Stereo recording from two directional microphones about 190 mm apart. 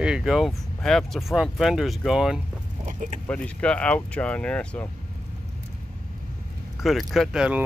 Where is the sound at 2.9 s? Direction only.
40° right (ahead or behind).